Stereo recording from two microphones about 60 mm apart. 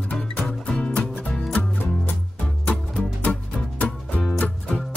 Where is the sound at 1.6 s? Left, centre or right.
Left.